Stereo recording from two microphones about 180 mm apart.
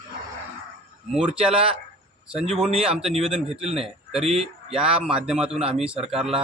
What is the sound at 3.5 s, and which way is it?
Speech, 35° right (ahead or behind).